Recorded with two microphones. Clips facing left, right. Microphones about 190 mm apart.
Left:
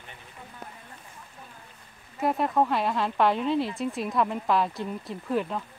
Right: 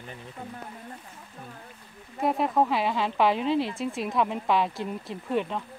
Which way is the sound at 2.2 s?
Centre (ahead or behind).